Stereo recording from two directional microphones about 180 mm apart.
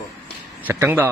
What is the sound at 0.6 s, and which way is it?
Speech, 10° right (ahead or behind).